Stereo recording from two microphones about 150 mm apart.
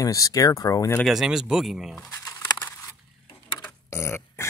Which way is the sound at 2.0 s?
20° left (ahead or behind).